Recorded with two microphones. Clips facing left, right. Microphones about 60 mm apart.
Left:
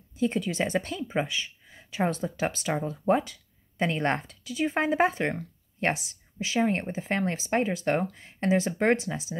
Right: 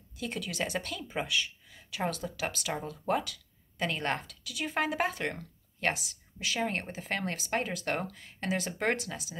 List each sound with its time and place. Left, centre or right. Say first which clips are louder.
0.2 s speech: left 8 dB; left
6.5 s speech: left 7 dB; left